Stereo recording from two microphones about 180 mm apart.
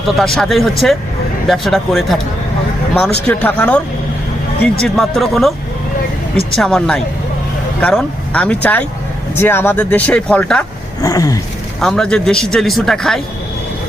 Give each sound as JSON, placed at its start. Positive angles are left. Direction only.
{"t": 0.3, "sound": "speech", "side_deg": 0}
{"t": 11.0, "sound": "a sound", "side_deg": 20}
{"t": 11.8, "sound": "speech", "side_deg": 5}